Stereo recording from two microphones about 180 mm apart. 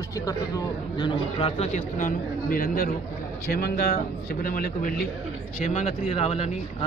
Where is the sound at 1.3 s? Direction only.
35° left (ahead or behind); by 5.0 s 50° left (ahead or behind).